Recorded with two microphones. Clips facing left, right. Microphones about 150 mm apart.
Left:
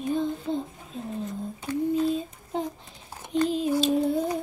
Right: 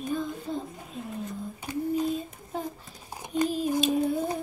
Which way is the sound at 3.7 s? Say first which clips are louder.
Left 2 dB; 20° right (ahead or behind).